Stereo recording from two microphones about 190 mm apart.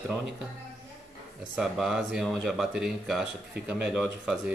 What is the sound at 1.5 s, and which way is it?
Speech, 5° right (ahead or behind).